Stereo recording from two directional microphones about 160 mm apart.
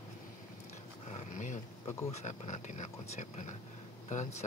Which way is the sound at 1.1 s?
45° left (ahead or behind).